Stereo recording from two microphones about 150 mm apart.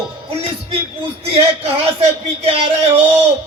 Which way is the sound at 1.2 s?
40° right (ahead or behind).